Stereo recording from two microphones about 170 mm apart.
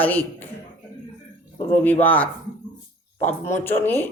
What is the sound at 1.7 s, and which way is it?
Speech, 10° left (ahead or behind).